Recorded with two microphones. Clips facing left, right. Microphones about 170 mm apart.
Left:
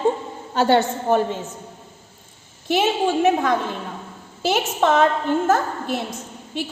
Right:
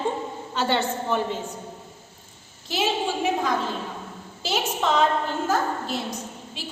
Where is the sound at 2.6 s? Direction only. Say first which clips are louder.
Left 6 dB; 55° left (ahead or behind).